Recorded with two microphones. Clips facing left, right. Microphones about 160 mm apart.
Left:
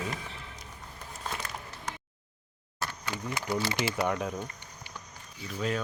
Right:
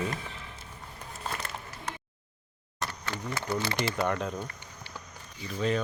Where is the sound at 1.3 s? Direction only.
Centre (ahead or behind).